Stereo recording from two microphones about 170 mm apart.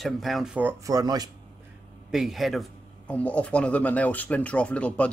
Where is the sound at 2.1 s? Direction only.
Centre (ahead or behind).